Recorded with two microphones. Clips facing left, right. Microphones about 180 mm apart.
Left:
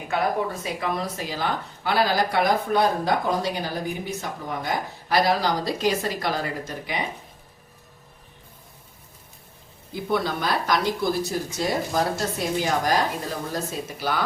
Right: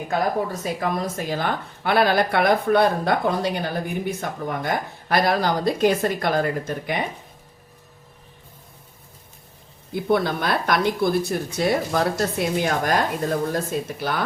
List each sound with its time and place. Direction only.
0.1 s speech: 40° right (ahead or behind)
9.9 s speech: 55° right (ahead or behind)